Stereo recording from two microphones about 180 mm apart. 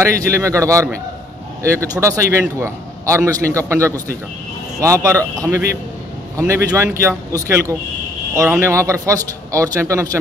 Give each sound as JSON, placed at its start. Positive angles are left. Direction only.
{"t": 0.0, "sound": "a man's voice", "side_deg": -15}